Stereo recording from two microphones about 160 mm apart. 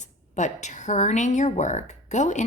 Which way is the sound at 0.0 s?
50° left (ahead or behind).